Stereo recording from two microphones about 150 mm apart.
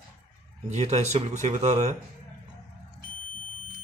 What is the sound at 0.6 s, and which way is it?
Speech, 50° right (ahead or behind).